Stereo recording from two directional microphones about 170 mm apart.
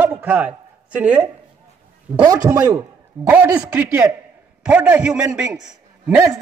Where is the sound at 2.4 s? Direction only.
15° right (ahead or behind).